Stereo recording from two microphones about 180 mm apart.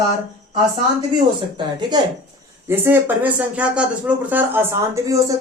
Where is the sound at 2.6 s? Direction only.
10° right (ahead or behind).